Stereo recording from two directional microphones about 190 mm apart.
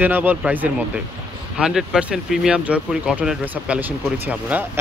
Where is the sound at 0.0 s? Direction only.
10° right (ahead or behind).